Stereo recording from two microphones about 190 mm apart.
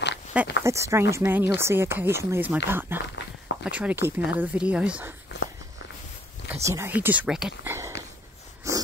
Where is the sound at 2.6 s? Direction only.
10° right (ahead or behind).